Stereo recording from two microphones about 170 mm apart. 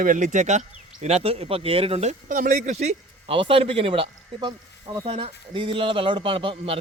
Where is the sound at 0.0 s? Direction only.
50° right (ahead or behind).